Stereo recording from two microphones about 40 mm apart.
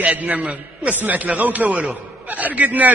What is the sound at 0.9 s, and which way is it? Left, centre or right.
A man's voice, right.